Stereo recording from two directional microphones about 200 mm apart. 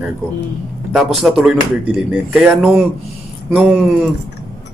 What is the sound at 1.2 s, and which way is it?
A man's voice, centre (ahead or behind).